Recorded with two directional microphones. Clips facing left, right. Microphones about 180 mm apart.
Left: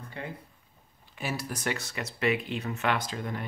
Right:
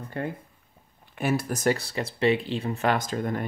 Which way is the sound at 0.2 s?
50° right (ahead or behind).